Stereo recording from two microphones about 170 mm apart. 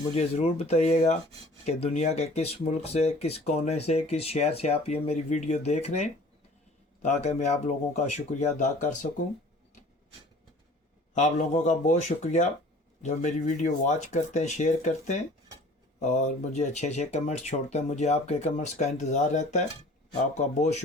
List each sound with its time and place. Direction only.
0.1 s speech: 40° left (ahead or behind)
11.1 s speech: 45° left (ahead or behind)